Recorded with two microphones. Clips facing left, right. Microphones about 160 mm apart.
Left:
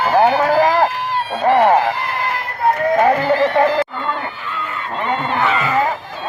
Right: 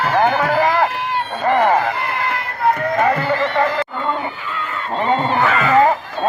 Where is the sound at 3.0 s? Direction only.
10° left (ahead or behind).